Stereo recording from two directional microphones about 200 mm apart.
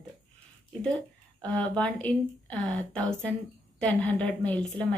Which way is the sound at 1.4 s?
5° left (ahead or behind).